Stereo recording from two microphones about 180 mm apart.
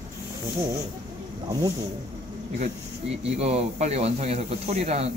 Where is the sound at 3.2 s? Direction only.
35° right (ahead or behind).